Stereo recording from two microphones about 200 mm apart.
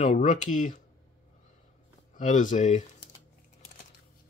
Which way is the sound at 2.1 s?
40° left (ahead or behind).